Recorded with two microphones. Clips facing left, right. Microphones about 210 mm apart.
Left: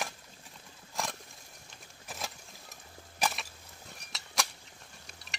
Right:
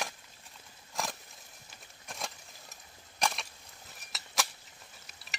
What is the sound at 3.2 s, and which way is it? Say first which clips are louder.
Crushing: even; centre (ahead or behind).